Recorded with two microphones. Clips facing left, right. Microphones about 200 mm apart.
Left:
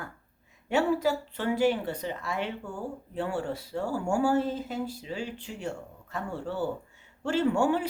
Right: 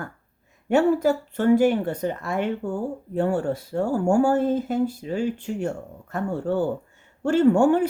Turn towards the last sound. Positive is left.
turn(degrees=-50)  # may be behind; listen again after turning